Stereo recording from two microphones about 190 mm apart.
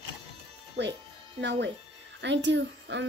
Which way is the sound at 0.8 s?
65° right (ahead or behind).